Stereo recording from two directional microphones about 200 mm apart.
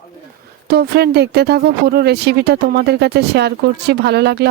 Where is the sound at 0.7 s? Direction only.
50° right (ahead or behind).